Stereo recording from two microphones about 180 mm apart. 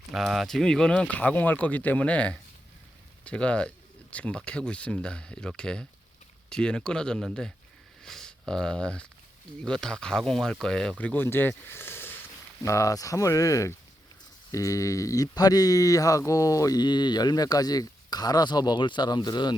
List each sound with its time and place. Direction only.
0.1 s speech: centre (ahead or behind); by 19.5 s 25° left (ahead or behind)